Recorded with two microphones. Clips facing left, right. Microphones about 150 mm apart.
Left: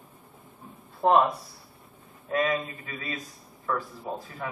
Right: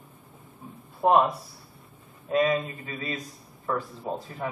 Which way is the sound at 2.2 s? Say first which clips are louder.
Right 3 dB; 20° right (ahead or behind).